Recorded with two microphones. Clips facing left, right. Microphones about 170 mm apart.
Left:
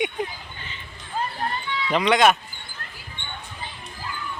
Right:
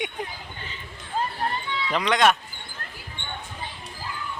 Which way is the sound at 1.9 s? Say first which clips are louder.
Left 3 dB; 5° left (ahead or behind).